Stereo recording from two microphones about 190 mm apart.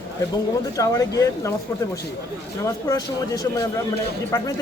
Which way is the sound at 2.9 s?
20° left (ahead or behind).